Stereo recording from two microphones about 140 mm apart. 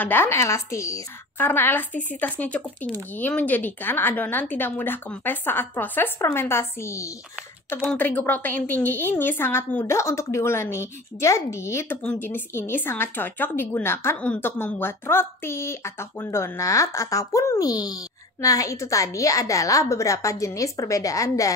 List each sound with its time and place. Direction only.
0.0 s a woman's voice: 15° left (ahead or behind)
7.7 s a woman's voice: 10° left (ahead or behind)